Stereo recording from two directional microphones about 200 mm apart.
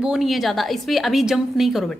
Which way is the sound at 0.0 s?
Centre (ahead or behind).